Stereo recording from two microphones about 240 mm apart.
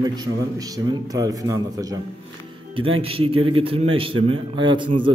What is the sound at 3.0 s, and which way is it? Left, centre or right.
A man's voice, right.